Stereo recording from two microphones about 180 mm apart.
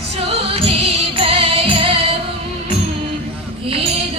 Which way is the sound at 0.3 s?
35° right (ahead or behind).